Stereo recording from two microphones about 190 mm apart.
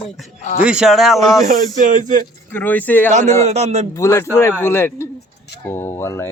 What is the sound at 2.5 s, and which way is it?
Speech, 10° left (ahead or behind).